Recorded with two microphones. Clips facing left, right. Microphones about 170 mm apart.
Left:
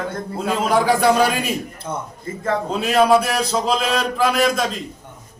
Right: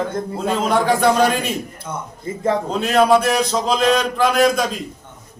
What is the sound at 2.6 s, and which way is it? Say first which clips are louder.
Speech: even; 5° left (ahead or behind).